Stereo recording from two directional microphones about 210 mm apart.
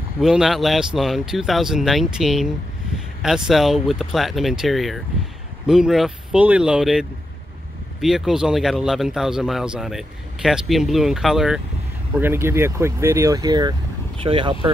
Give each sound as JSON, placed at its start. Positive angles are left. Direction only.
{"t": 0.2, "sound": "a man's voice", "side_deg": 0}